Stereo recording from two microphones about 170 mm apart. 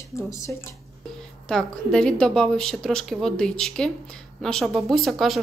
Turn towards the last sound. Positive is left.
turn(degrees=0)  # may be behind; listen again after turning